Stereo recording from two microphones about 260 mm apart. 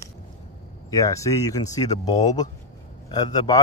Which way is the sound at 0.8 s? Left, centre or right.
Centre.